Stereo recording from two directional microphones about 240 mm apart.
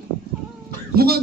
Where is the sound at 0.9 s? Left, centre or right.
Right.